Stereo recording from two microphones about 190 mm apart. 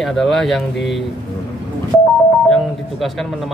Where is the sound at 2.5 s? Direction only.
Centre (ahead or behind).